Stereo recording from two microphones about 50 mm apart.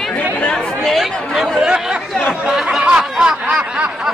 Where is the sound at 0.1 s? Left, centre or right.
Left.